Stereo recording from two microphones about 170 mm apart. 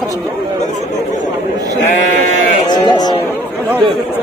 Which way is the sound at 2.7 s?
25° left (ahead or behind).